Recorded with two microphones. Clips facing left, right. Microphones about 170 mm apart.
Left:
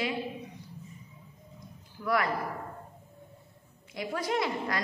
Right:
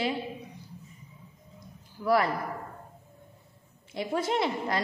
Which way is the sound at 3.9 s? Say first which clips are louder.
Right 3 dB; 25° right (ahead or behind).